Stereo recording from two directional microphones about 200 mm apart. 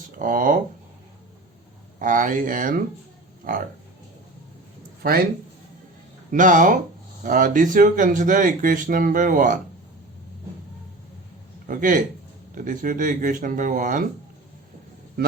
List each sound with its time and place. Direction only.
0.2 s speech: 45° right (ahead or behind)
2.0 s speech: 40° right (ahead or behind)
5.0 s speech: 50° right (ahead or behind)
6.3 s speech: 40° right (ahead or behind)
11.6 s a man's voice: 40° right (ahead or behind)